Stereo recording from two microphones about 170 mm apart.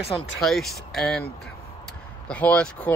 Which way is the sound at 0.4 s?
Centre (ahead or behind).